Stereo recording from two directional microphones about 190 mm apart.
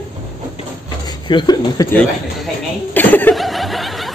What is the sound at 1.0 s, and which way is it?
Speech, 20° left (ahead or behind).